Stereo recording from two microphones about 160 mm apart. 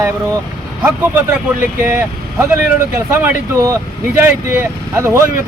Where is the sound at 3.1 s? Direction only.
15° right (ahead or behind).